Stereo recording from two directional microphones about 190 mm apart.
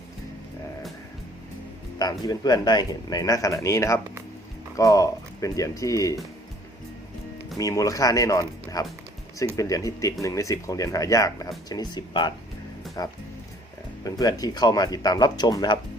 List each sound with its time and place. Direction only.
2.0 s speech: 20° left (ahead or behind)
7.6 s speech: 15° left (ahead or behind)